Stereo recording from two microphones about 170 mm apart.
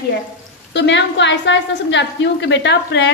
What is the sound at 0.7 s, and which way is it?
A woman's voice, 90° left.